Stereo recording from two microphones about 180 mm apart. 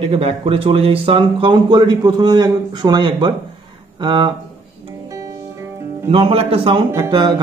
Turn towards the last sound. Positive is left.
turn(degrees=-25)  # may be behind; listen again after turning